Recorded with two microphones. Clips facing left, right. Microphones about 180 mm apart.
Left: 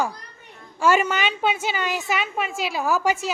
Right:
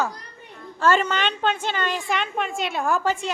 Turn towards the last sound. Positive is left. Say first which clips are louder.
# left 1 dB
turn(degrees=5)  # may be behind; listen again after turning